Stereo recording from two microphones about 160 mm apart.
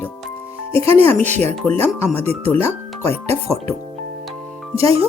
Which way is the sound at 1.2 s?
45° right (ahead or behind).